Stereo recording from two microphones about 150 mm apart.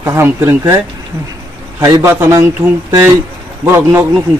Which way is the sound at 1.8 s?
25° right (ahead or behind).